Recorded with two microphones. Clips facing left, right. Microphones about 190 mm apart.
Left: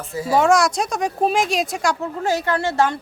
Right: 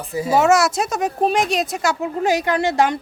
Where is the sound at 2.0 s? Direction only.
15° right (ahead or behind).